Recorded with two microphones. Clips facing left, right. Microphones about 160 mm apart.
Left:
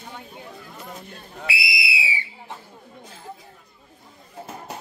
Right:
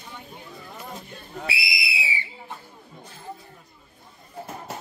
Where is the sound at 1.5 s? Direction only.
20° right (ahead or behind).